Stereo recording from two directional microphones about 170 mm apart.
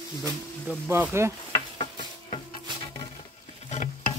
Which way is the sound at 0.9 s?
15° right (ahead or behind).